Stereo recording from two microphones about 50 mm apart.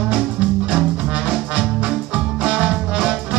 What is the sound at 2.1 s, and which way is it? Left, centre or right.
Music, right.